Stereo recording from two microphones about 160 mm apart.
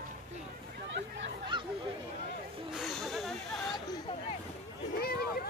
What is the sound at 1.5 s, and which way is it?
Chatter, 30° right (ahead or behind).